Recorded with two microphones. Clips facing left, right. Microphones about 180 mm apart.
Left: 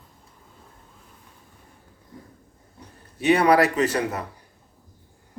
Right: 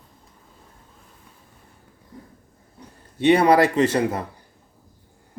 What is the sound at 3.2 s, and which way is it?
Speech, 25° right (ahead or behind).